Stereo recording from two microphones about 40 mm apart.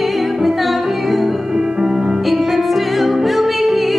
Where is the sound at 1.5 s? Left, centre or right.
Centre.